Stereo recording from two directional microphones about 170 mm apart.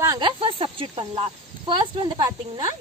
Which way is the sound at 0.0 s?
20° right (ahead or behind).